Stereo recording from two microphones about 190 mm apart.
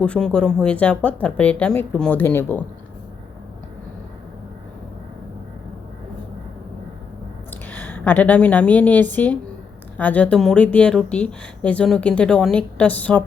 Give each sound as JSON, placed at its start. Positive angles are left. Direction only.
{"t": 0.0, "sound": "speech", "side_deg": 5}
{"t": 7.5, "sound": "a woman's voice", "side_deg": 10}